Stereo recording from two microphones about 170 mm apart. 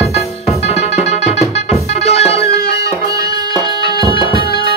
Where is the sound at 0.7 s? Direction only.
40° left (ahead or behind).